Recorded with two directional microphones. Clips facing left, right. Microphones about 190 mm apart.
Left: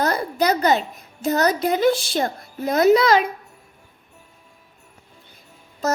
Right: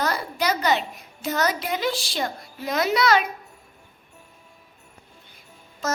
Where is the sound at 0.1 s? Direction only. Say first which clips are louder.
Left 5 dB; 45° left (ahead or behind).